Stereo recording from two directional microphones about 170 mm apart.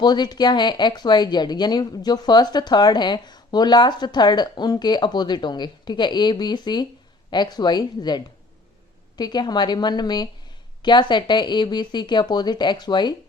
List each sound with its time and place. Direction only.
0.0 s a woman's voice: 25° left (ahead or behind)